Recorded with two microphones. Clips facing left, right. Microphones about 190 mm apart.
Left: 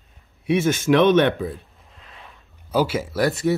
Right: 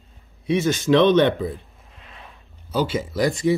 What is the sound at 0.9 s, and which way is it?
Speech, 15° left (ahead or behind).